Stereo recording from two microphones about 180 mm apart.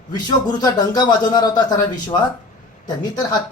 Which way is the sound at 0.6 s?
20° left (ahead or behind).